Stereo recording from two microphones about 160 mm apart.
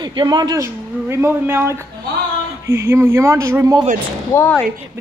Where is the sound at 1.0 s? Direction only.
15° right (ahead or behind).